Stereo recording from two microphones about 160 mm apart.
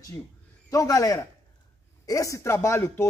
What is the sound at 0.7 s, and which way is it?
A man's voice, 20° left (ahead or behind).